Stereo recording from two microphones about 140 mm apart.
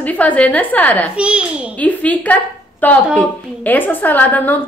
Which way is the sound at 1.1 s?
10° right (ahead or behind).